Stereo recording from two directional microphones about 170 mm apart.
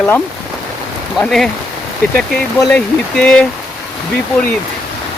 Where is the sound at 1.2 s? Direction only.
Centre (ahead or behind).